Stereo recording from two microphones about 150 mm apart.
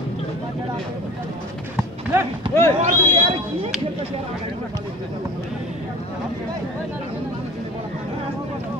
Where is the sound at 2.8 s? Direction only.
40° right (ahead or behind).